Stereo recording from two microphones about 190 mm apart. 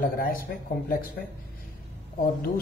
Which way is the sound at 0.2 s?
50° left (ahead or behind).